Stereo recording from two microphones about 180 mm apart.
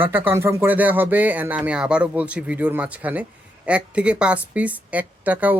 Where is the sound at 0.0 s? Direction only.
10° right (ahead or behind).